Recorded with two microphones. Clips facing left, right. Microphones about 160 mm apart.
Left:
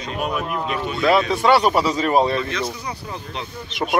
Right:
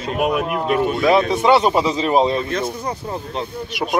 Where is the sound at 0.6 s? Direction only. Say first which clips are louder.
Right 7 dB; 50° right (ahead or behind).